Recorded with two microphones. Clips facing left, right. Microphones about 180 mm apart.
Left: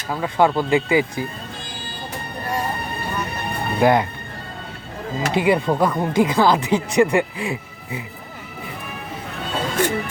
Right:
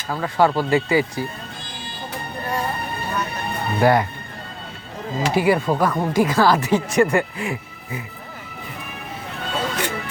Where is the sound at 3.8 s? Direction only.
15° left (ahead or behind).